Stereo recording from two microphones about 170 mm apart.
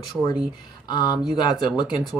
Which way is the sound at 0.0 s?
25° left (ahead or behind).